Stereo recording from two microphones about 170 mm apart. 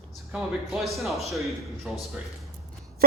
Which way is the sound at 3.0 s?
60° right (ahead or behind).